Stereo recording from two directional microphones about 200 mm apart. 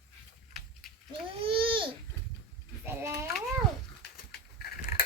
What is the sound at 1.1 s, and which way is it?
Babbling, 25° right (ahead or behind).